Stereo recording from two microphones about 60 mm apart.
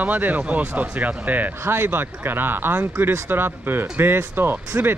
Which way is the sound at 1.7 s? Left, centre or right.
Right.